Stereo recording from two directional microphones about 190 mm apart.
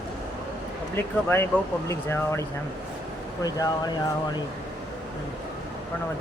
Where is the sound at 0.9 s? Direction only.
10° left (ahead or behind).